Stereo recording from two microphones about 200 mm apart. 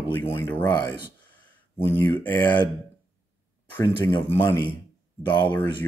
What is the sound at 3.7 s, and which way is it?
Speech, 15° left (ahead or behind).